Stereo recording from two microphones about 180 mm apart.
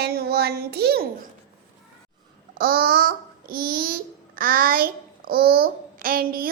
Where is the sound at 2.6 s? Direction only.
55° right (ahead or behind).